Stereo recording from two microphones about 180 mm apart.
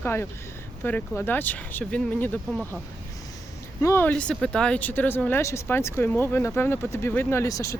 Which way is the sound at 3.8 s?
15° left (ahead or behind).